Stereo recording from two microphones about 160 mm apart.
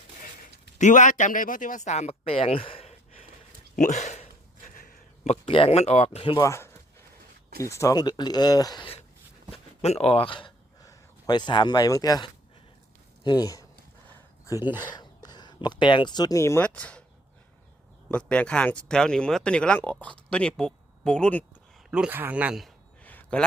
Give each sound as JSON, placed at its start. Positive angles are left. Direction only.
{"t": 0.8, "sound": "speech", "side_deg": 50}
{"t": 4.6, "sound": "speech", "side_deg": 55}
{"t": 6.2, "sound": "speech", "side_deg": 25}
{"t": 9.5, "sound": "a sound", "side_deg": 40}
{"t": 10.8, "sound": "speech", "side_deg": 30}
{"t": 14.1, "sound": "a sound", "side_deg": 20}
{"t": 14.8, "sound": "speech", "side_deg": 25}
{"t": 18.1, "sound": "speech", "side_deg": 5}
{"t": 21.8, "sound": "speech", "side_deg": -5}
{"t": 23.0, "sound": "a sound", "side_deg": 10}